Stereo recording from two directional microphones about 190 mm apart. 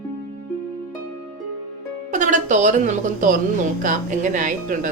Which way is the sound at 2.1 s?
40° right (ahead or behind).